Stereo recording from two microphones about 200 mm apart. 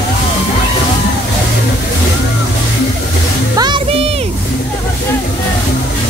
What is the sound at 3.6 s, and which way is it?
Music, 25° right (ahead or behind).